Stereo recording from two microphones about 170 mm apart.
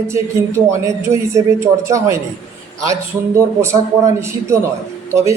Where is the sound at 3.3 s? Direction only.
15° right (ahead or behind).